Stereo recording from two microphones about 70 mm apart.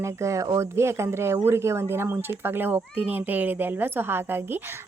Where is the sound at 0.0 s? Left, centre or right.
Right.